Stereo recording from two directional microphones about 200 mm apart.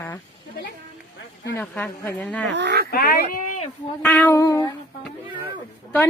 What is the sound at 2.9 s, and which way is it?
Speech, 50° left (ahead or behind).